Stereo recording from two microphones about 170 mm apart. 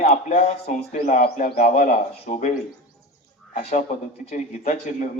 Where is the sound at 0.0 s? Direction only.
40° left (ahead or behind).